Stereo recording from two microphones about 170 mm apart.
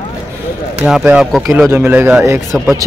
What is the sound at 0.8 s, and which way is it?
Speech, 10° right (ahead or behind).